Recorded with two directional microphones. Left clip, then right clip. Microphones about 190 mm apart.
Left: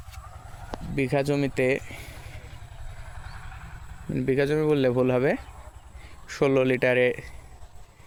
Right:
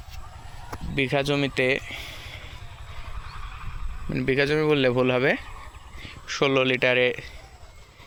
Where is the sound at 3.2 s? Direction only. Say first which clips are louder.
Right 3 dB; 45° left (ahead or behind).